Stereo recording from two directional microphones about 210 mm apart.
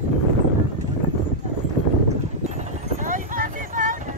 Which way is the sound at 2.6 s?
40° right (ahead or behind).